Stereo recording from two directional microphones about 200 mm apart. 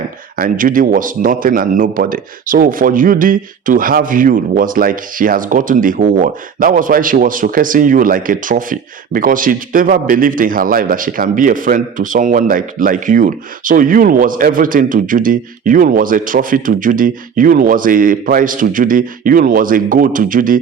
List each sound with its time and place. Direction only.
0.3 s speech: 45° right (ahead or behind)